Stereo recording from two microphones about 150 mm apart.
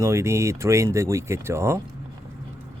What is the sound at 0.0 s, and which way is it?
Speech, 20° right (ahead or behind).